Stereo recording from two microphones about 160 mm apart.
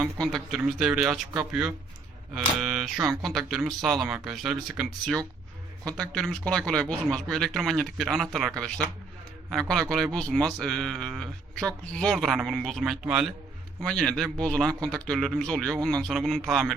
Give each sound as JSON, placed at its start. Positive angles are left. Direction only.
{"t": 0.2, "sound": "speech", "side_deg": 0}
{"t": 3.0, "sound": "speech", "side_deg": -20}
{"t": 3.2, "sound": "speech", "side_deg": 0}